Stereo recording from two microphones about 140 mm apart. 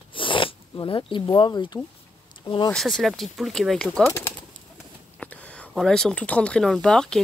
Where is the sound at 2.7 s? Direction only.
5° left (ahead or behind).